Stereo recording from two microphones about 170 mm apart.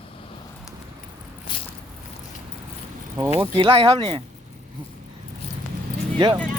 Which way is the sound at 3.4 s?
30° right (ahead or behind).